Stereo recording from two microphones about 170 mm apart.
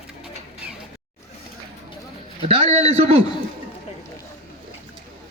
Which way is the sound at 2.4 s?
40° right (ahead or behind).